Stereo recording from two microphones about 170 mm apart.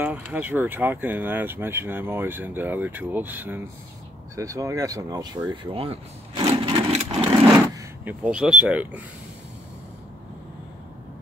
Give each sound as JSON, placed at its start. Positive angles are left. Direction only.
{"t": 0.0, "sound": "speech", "side_deg": -10}
{"t": 6.4, "sound": "wood", "side_deg": -25}
{"t": 7.7, "sound": "speech", "side_deg": -10}